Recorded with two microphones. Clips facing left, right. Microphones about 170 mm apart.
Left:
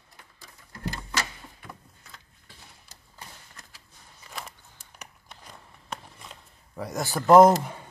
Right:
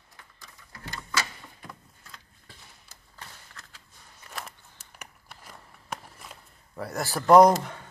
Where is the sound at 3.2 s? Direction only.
15° left (ahead or behind).